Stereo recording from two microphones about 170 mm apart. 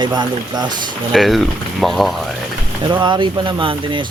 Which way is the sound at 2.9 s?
25° right (ahead or behind).